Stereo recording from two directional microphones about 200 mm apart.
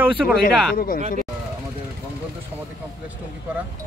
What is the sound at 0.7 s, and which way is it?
Speech, 45° left (ahead or behind).